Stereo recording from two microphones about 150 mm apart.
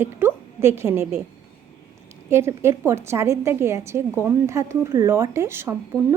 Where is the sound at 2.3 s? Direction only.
15° right (ahead or behind).